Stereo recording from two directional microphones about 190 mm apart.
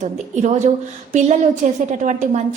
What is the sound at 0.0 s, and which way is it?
Speech, 40° right (ahead or behind).